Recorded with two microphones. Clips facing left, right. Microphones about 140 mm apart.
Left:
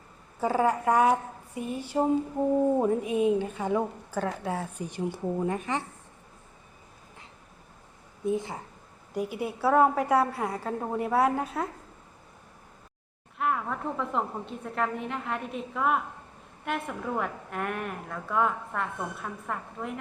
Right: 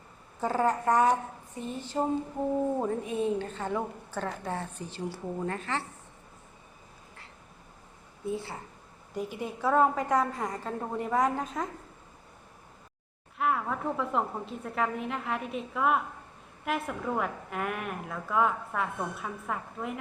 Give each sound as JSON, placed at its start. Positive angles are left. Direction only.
{"t": 0.3, "sound": "a woman's voice", "side_deg": 10}
{"t": 8.2, "sound": "a woman's voice", "side_deg": 15}
{"t": 13.4, "sound": "a woman's voice", "side_deg": 0}